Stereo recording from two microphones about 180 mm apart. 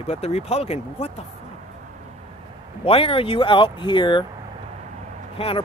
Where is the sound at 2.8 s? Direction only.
30° left (ahead or behind).